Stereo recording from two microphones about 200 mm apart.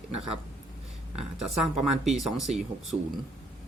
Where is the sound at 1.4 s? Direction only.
Centre (ahead or behind).